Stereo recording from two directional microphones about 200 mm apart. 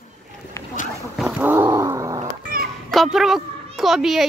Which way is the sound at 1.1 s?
5° right (ahead or behind).